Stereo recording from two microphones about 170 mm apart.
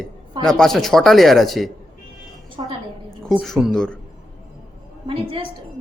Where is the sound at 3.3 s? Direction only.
Centre (ahead or behind).